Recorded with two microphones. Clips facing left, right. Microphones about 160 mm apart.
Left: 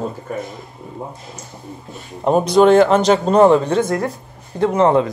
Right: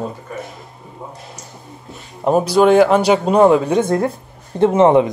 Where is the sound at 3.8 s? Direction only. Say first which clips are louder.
Right 2 dB; 25° right (ahead or behind).